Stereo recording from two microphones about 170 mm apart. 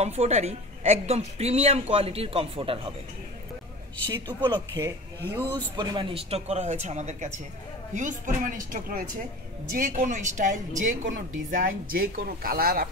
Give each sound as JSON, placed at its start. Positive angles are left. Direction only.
{"t": 0.0, "sound": "speech", "side_deg": -40}
{"t": 4.1, "sound": "a woman's voice", "side_deg": -25}